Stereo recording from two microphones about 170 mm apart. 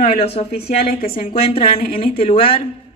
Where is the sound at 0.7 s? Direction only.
60° left (ahead or behind).